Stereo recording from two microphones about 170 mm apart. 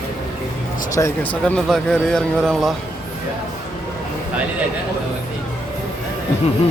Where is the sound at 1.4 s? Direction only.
5° left (ahead or behind).